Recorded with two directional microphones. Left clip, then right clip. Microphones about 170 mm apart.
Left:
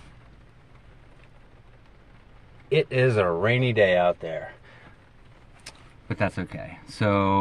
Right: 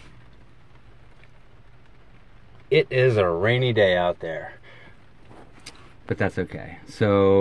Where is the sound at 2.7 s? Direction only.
25° right (ahead or behind).